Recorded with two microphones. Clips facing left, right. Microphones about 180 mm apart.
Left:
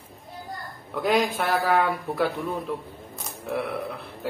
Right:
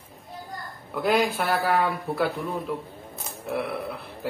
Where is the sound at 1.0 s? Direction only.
Centre (ahead or behind).